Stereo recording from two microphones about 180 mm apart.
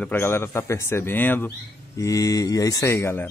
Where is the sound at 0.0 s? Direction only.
10° left (ahead or behind).